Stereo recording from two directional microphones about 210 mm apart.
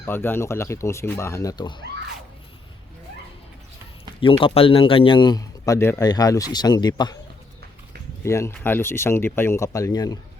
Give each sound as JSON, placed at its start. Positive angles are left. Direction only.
{"t": 0.0, "sound": "speech", "side_deg": 10}
{"t": 4.2, "sound": "a man's voice", "side_deg": 25}
{"t": 8.2, "sound": "speech", "side_deg": 15}